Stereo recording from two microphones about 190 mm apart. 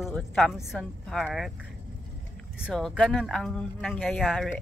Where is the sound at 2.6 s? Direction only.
Centre (ahead or behind).